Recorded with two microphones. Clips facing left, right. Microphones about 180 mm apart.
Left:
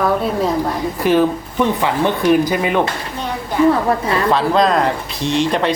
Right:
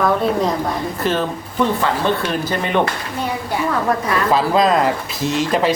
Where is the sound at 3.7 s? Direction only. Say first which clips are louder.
Left 3 dB; 25° left (ahead or behind).